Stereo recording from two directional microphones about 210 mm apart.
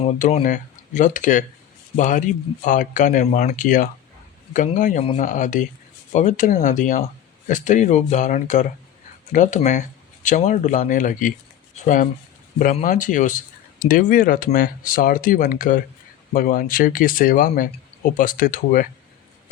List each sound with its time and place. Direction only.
0.0 s speech: 30° left (ahead or behind)